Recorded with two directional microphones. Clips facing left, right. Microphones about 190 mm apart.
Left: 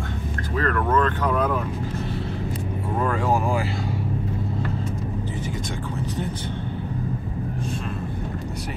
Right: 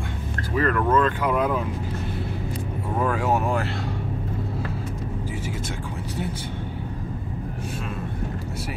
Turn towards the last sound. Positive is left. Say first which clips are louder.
# left 2 dB
turn(degrees=-5)  # may be behind; listen again after turning